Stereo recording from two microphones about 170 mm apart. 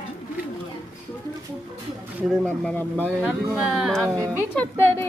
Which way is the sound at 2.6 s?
10° left (ahead or behind).